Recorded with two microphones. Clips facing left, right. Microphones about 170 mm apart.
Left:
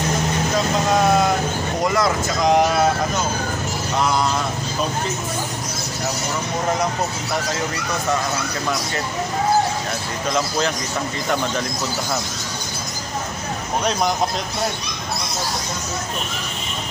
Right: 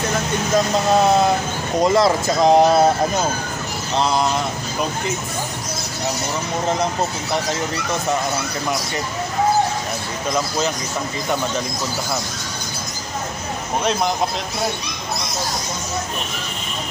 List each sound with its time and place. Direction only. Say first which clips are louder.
1.8 s speech: right 5 dB; 25° right (ahead or behind)
3.9 s speech: right 2 dB; 25° right (ahead or behind)